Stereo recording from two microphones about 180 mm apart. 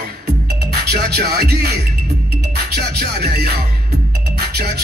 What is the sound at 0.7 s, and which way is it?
Music, 65° right (ahead or behind).